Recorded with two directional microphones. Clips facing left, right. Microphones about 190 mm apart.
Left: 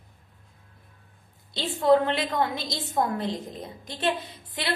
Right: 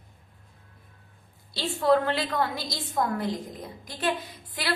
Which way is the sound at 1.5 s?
20° left (ahead or behind).